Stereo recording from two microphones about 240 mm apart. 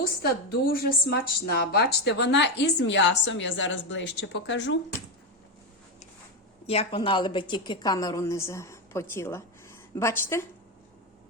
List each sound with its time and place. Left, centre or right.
0.6 s a woman's voice: left
6.7 s a woman's voice: left